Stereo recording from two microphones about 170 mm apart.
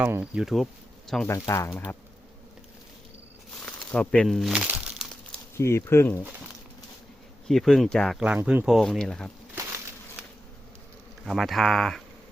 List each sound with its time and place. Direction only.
0.0 s speech: 10° right (ahead or behind)
1.3 s speech: 15° left (ahead or behind)
3.7 s speech: 5° left (ahead or behind)
5.5 s speech: 15° left (ahead or behind)
7.4 s speech: centre (ahead or behind)
11.3 s speech: centre (ahead or behind)